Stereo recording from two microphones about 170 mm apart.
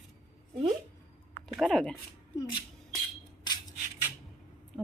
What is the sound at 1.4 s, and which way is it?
Speech, centre (ahead or behind).